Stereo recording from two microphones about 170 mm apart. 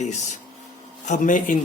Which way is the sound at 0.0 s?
45° left (ahead or behind).